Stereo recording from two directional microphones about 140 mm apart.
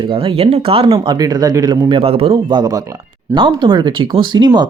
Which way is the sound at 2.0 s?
45° right (ahead or behind).